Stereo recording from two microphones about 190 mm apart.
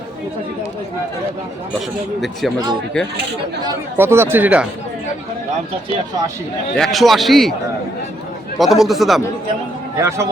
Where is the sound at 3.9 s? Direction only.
10° right (ahead or behind).